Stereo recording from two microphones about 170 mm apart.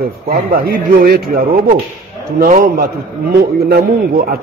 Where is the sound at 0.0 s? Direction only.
60° right (ahead or behind).